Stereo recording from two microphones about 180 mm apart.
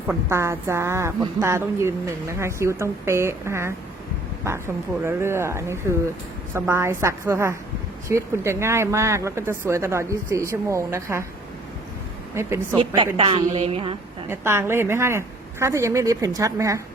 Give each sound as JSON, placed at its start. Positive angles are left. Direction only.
{"t": 0.3, "sound": "a woman's voice", "side_deg": -15}
{"t": 12.3, "sound": "speech", "side_deg": -15}
{"t": 12.7, "sound": "a woman's voice", "side_deg": -30}
{"t": 13.1, "sound": "a sound", "side_deg": -30}
{"t": 14.3, "sound": "a woman's voice", "side_deg": -15}